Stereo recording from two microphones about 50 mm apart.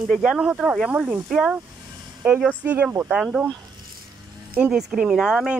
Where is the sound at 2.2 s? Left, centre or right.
Right.